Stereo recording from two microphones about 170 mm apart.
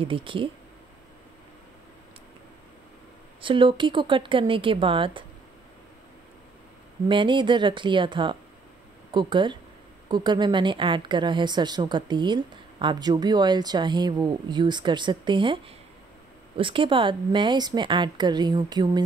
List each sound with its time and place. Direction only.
0.0 s speech: 30° right (ahead or behind)
3.3 s speech: 30° right (ahead or behind)
7.1 s a woman's voice: 30° right (ahead or behind)